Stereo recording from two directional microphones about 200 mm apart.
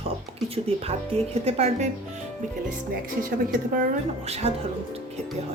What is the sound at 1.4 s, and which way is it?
Speech, 30° right (ahead or behind).